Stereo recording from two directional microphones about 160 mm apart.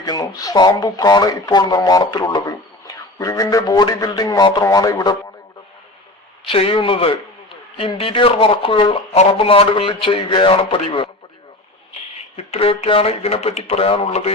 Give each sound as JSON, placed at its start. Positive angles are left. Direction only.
{"t": 0.0, "sound": "speech", "side_deg": 25}
{"t": 6.5, "sound": "speech", "side_deg": 35}
{"t": 12.4, "sound": "speech", "side_deg": 40}